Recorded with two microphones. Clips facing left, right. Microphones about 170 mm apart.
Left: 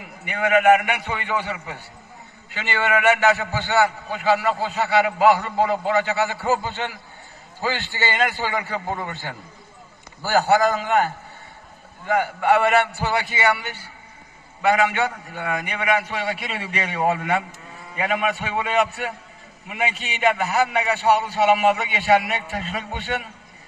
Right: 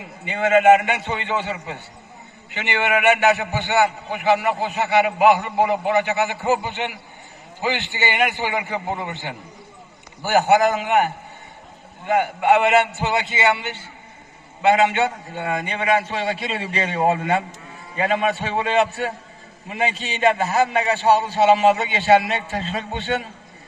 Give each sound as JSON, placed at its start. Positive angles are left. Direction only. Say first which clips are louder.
{"t": 0.0, "sound": "a man's voice", "louder": "right 2 dB", "side_deg": -25}